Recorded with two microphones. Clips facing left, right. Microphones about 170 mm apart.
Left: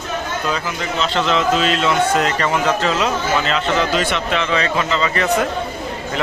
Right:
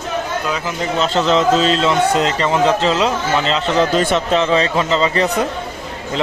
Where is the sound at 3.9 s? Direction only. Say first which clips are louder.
Right 4 dB; 40° right (ahead or behind).